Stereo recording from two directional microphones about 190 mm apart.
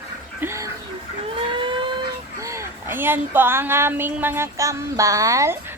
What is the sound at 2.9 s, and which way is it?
Speech, 10° right (ahead or behind).